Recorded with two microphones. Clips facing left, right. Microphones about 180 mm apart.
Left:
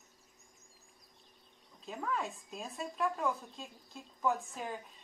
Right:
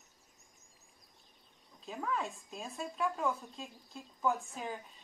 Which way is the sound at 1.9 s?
Centre (ahead or behind).